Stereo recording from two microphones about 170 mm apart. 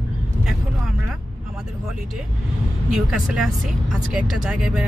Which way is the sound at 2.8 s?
Centre (ahead or behind).